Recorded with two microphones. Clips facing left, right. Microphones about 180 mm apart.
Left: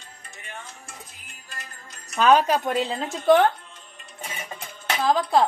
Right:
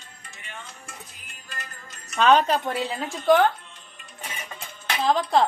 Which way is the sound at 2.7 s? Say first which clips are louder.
Left 3 dB; 20° left (ahead or behind).